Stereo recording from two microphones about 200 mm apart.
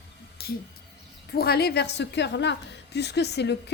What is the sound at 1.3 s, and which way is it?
A woman's voice, 50° left (ahead or behind).